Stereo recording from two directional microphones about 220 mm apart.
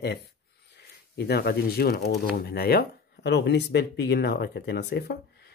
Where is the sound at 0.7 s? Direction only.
50° left (ahead or behind).